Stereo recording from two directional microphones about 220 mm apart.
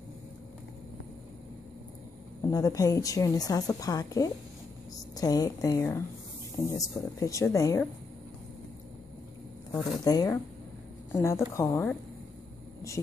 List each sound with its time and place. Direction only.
2.4 s a woman's voice: 15° left (ahead or behind)
10.0 s a woman's voice: 15° left (ahead or behind)